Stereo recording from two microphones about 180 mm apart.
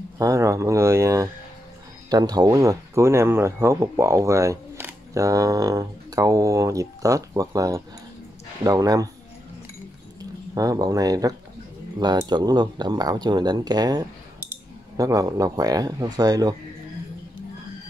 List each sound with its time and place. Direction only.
0.2 s speech: 20° right (ahead or behind)
10.5 s speech: 20° right (ahead or behind)